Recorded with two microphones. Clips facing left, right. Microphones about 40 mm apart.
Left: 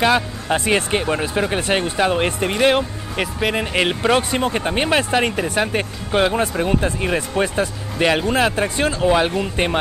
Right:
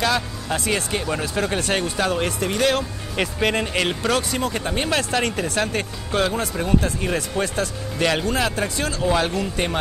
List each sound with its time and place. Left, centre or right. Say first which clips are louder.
0.0 s speech: left 5 dB; left
3.2 s speech: left 1 dB; centre
3.6 s speech: left 4 dB; left